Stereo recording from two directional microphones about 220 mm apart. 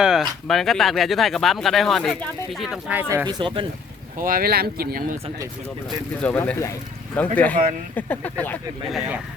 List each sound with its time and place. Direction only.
0.0 s speech: centre (ahead or behind); by 3.7 s 20° right (ahead or behind)
4.2 s speech: 40° right (ahead or behind)
6.2 s speech: 10° left (ahead or behind)